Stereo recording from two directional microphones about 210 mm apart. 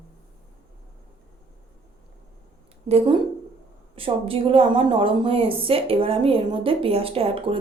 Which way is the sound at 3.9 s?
25° right (ahead or behind).